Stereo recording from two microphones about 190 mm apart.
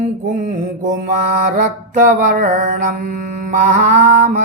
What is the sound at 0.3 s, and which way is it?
Mantra, 40° right (ahead or behind).